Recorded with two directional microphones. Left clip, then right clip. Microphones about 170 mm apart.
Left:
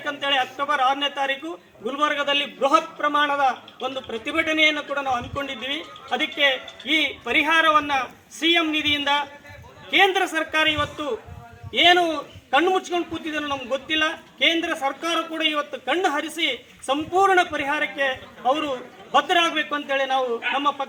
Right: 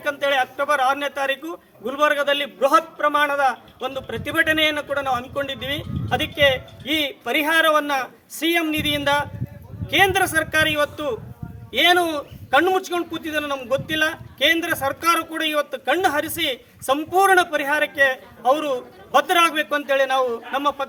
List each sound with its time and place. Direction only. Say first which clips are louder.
0.0 s a man's voice: right 2 dB; 25° right (ahead or behind)